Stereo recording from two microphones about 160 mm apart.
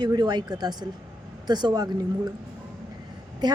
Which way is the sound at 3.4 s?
25° right (ahead or behind).